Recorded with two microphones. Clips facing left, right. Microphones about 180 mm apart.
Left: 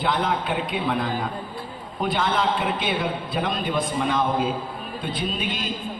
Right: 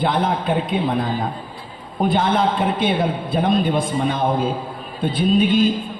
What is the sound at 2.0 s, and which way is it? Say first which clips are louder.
A man's voice: right 6 dB; 45° right (ahead or behind).